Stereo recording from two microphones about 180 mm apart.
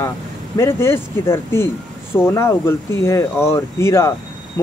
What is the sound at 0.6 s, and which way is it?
Speech, 15° left (ahead or behind).